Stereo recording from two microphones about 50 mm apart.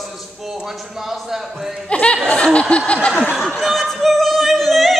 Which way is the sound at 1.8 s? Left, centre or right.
Left.